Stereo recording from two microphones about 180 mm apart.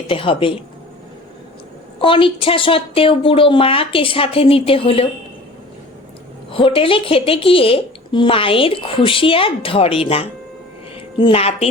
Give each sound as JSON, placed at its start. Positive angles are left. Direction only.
{"t": 0.1, "sound": "a woman's voice", "side_deg": 30}
{"t": 2.0, "sound": "a woman's voice", "side_deg": 30}
{"t": 6.5, "sound": "a woman's voice", "side_deg": 30}